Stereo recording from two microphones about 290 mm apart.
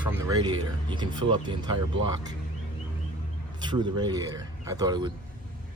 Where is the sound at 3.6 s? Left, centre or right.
Centre.